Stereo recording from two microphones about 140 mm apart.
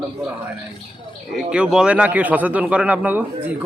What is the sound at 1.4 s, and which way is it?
Speech, 5° right (ahead or behind).